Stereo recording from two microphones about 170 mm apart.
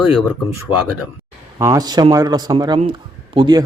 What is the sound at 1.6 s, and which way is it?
A man's voice, 20° right (ahead or behind).